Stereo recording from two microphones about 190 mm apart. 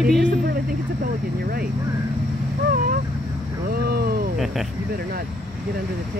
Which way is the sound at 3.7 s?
55° right (ahead or behind).